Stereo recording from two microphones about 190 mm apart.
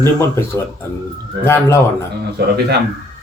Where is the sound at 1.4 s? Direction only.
15° left (ahead or behind).